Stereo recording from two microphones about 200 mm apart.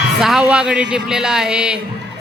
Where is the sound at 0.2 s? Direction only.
5° right (ahead or behind).